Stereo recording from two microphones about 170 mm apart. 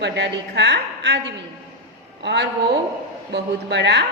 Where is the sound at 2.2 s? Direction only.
90° right.